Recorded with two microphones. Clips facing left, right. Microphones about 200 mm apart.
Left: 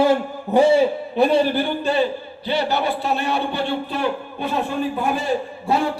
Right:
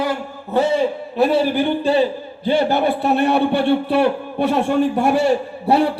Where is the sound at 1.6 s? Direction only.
30° right (ahead or behind).